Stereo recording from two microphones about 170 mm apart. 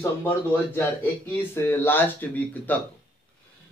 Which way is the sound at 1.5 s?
15° left (ahead or behind).